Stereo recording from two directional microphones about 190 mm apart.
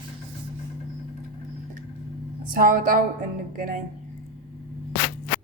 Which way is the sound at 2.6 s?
45° right (ahead or behind).